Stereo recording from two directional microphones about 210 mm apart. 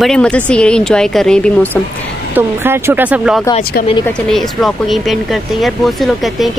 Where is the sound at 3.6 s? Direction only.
45° left (ahead or behind).